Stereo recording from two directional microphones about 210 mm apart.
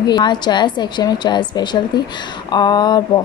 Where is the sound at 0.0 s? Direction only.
20° left (ahead or behind).